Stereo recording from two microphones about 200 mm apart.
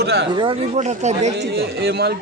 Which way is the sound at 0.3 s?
20° right (ahead or behind).